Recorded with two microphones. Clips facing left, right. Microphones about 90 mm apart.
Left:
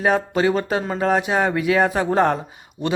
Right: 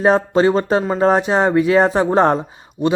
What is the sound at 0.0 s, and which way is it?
Speech, 35° right (ahead or behind).